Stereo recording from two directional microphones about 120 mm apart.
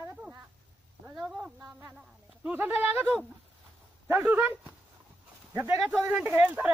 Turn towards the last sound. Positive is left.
turn(degrees=-10)  # may be behind; listen again after turning